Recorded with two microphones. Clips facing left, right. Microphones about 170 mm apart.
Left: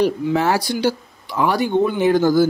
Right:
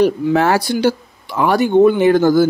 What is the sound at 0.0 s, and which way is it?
Speech, 65° right (ahead or behind).